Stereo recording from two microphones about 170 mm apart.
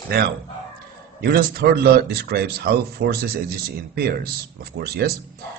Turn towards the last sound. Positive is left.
turn(degrees=-65)  # may be behind; listen again after turning